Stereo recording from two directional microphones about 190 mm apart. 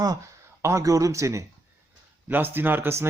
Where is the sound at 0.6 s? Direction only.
15° right (ahead or behind).